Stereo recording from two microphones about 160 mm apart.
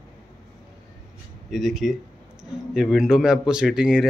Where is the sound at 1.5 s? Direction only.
Centre (ahead or behind).